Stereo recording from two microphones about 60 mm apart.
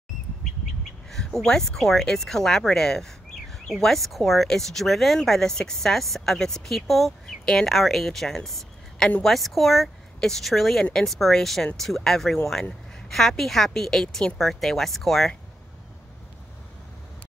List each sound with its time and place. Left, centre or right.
1.1 s a woman's voice: centre